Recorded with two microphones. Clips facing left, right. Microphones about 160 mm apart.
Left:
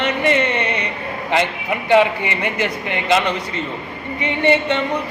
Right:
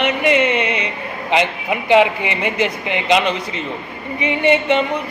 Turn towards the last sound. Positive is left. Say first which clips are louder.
# right 2 dB
turn(degrees=-15)  # may be behind; listen again after turning